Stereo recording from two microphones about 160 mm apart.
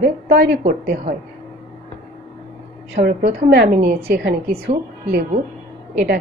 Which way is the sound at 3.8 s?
70° right (ahead or behind).